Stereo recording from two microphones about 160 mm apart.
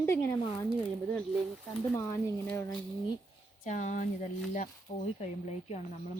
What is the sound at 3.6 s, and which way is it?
Speech, 50° left (ahead or behind).